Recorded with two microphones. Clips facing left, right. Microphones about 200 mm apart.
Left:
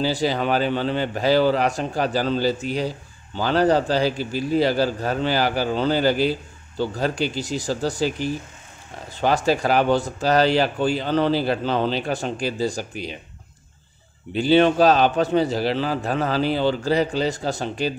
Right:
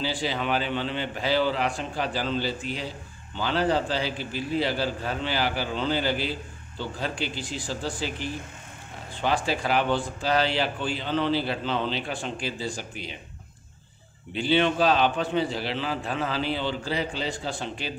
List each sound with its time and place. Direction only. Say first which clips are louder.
0.0 s speech: left 7 dB; 40° left (ahead or behind)
14.3 s speech: left 7 dB; 40° left (ahead or behind)